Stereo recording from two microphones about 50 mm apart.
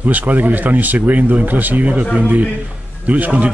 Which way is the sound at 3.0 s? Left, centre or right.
Right.